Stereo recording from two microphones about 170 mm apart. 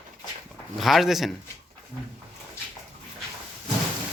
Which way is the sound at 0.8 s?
Centre (ahead or behind).